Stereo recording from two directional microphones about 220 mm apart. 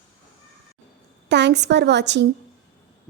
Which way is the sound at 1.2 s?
50° right (ahead or behind).